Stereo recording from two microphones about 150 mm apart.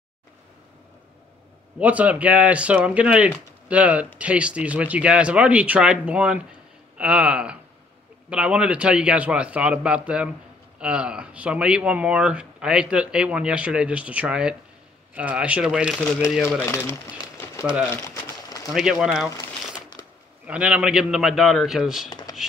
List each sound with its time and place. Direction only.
1.8 s speech: 10° right (ahead or behind)
16.4 s speech: 15° left (ahead or behind)
17.8 s a sound: 20° left (ahead or behind)
18.7 s a man's voice: 5° right (ahead or behind)
20.4 s a man's voice: 10° right (ahead or behind)